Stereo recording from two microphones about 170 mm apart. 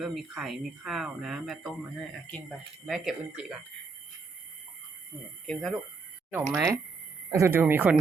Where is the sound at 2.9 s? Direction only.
5° right (ahead or behind).